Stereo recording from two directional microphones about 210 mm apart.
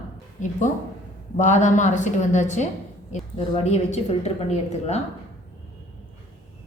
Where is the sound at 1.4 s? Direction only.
35° left (ahead or behind).